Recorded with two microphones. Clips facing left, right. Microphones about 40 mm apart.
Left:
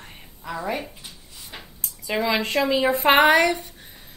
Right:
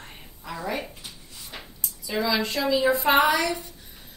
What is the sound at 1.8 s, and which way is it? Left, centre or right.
A woman's voice, left.